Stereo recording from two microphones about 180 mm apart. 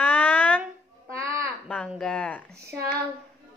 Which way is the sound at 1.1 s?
15° right (ahead or behind).